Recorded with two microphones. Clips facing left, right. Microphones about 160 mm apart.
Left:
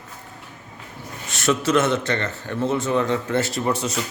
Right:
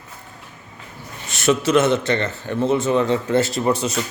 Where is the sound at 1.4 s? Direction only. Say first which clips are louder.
Right 3 dB; 20° right (ahead or behind).